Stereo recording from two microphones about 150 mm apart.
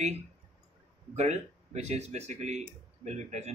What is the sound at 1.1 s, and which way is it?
Speech, 50° right (ahead or behind).